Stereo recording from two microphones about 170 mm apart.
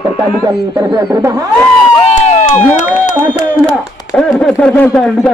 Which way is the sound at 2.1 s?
40° left (ahead or behind).